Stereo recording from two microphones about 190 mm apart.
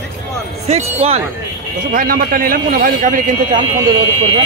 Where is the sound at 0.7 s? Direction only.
35° right (ahead or behind).